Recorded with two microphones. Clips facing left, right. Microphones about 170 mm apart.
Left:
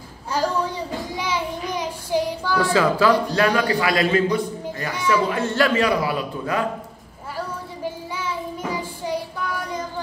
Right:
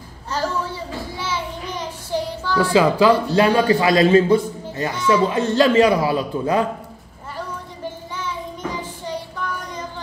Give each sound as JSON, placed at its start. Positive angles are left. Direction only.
{"t": 0.3, "sound": "a woman's voice", "side_deg": 10}
{"t": 1.1, "sound": "child singing", "side_deg": 15}
{"t": 2.6, "sound": "a woman's voice", "side_deg": -15}
{"t": 3.4, "sound": "speech", "side_deg": -25}
{"t": 8.2, "sound": "child singing", "side_deg": 10}